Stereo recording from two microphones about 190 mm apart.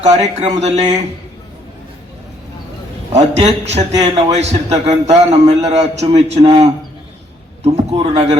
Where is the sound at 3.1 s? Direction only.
35° right (ahead or behind).